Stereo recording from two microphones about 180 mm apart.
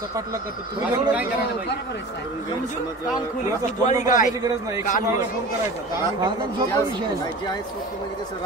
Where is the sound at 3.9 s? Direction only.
45° left (ahead or behind).